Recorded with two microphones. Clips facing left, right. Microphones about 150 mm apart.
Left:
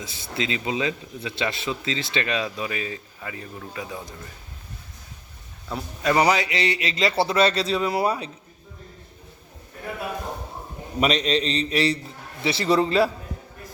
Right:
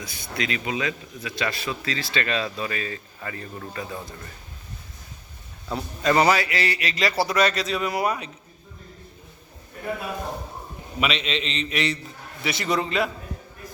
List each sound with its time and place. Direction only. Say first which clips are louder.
0.0 s a man's voice: left 1 dB; 25° left (ahead or behind); by 4.1 s 10° left (ahead or behind)
5.6 s a man's voice: right 1 dB; 5° left (ahead or behind); by 8.3 s 30° left (ahead or behind)
11.0 s a man's voice: left 5 dB; 40° left (ahead or behind)